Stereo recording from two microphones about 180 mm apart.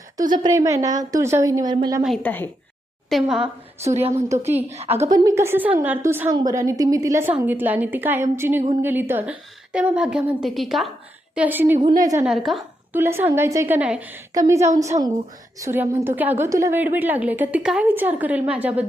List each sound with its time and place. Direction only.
0.4 s a woman's voice: 15° right (ahead or behind)
2.2 s speech: 10° left (ahead or behind)
3.1 s a woman's voice: centre (ahead or behind)
4.1 s a woman's voice: 15° right (ahead or behind)
4.7 s a woman's voice: 35° right (ahead or behind)
5.1 s a woman's voice: 15° right (ahead or behind); by 10.9 s centre (ahead or behind)
11.3 s a woman's voice: 10° right (ahead or behind)
13.0 s a woman's voice: 15° right (ahead or behind)